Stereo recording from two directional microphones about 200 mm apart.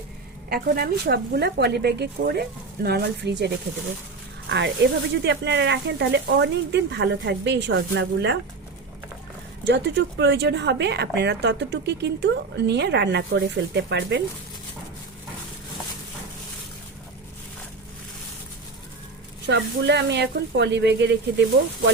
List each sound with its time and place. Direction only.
0.5 s speech: 50° right (ahead or behind)
9.6 s speech: 60° right (ahead or behind)
19.5 s speech: 60° right (ahead or behind)